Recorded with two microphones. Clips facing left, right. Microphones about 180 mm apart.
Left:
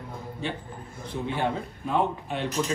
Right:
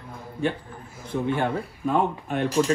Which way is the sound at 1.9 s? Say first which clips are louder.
Right 2 dB; 50° right (ahead or behind).